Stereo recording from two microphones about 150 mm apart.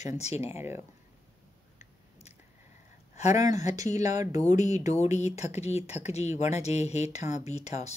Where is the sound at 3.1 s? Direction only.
50° left (ahead or behind).